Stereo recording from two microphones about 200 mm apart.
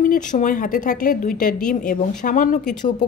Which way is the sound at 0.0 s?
40° left (ahead or behind).